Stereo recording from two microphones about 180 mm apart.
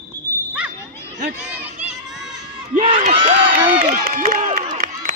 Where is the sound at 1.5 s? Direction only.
5° right (ahead or behind).